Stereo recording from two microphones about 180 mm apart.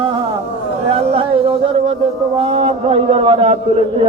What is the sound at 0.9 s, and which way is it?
A man's voice, 30° right (ahead or behind).